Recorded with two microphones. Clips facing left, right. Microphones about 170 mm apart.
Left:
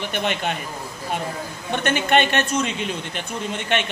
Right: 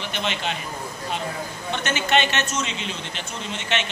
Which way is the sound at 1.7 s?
55° left (ahead or behind).